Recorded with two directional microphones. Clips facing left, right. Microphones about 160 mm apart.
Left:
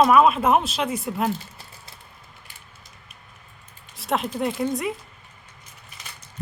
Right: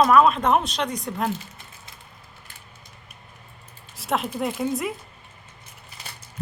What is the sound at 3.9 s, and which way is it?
Speech, centre (ahead or behind).